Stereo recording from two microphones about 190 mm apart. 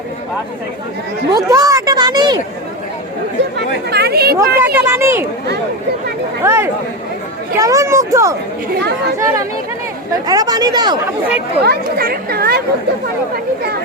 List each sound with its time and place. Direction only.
1.5 s speech: 15° right (ahead or behind)
3.6 s speech: 60° right (ahead or behind)
4.4 s speech: 10° right (ahead or behind)
6.4 s speech: 15° right (ahead or behind)
11.6 s speech: 55° right (ahead or behind)